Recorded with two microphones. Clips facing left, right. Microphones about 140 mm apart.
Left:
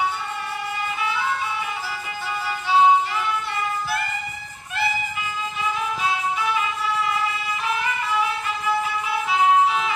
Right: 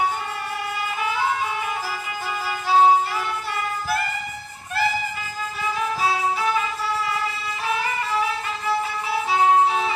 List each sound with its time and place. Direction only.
2.6 s music: 40° right (ahead or behind)
7.8 s music: 35° right (ahead or behind)